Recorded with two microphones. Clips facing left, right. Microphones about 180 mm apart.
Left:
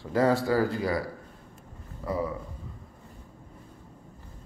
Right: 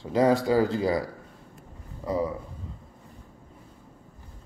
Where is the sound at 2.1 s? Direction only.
20° right (ahead or behind).